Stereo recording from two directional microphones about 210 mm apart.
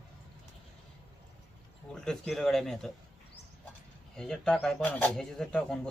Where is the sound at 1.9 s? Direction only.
Centre (ahead or behind).